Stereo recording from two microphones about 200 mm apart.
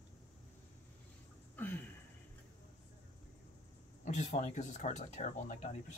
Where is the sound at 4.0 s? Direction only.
35° left (ahead or behind).